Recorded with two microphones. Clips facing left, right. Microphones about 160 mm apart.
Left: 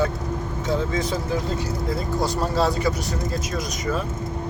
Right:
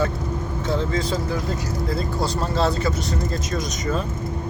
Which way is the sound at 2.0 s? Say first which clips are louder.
Left 2 dB; 15° left (ahead or behind).